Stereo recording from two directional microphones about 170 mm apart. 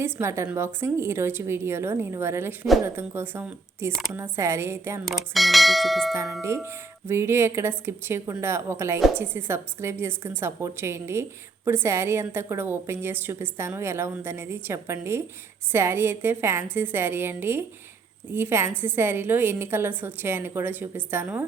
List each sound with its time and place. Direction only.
0.0 s a woman's voice: 15° right (ahead or behind)
5.0 s speech: centre (ahead or behind)
6.4 s a woman's voice: 15° right (ahead or behind)